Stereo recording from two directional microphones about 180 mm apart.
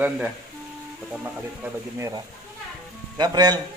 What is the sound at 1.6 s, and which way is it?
Speech, 15° right (ahead or behind).